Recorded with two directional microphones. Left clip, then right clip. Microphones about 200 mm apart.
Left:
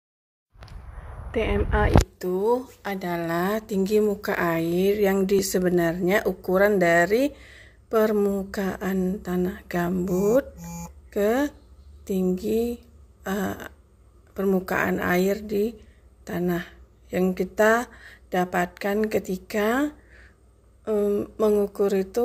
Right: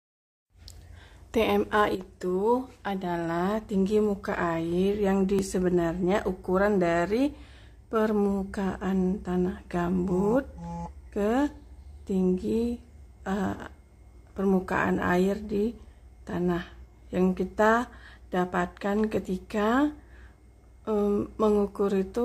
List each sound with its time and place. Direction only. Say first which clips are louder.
1.3 s speech: right 1 dB; 15° right (ahead or behind)
2.1 s a woman's voice: left 2 dB; 5° left (ahead or behind)